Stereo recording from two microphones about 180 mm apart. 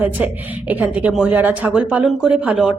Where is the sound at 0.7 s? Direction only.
10° right (ahead or behind).